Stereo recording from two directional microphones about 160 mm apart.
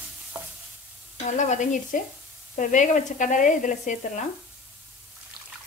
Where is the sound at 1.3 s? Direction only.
50° left (ahead or behind).